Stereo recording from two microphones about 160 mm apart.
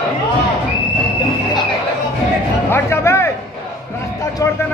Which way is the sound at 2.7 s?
15° left (ahead or behind).